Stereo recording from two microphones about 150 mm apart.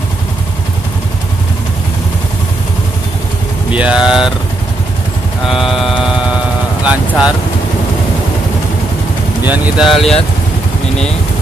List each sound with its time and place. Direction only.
3.7 s speech: 5° right (ahead or behind)
5.5 s a sound: centre (ahead or behind)
6.8 s vehicle: 10° right (ahead or behind)
9.5 s speech: centre (ahead or behind)